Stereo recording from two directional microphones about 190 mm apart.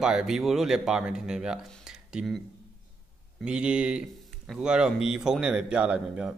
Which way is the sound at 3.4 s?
5° right (ahead or behind).